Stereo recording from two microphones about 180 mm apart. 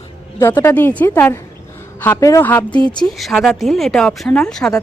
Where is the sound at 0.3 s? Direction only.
15° left (ahead or behind).